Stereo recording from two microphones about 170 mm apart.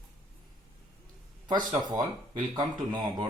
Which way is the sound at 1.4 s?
25° right (ahead or behind).